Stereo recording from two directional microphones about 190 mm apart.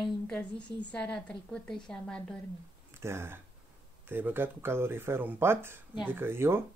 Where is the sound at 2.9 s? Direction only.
15° right (ahead or behind).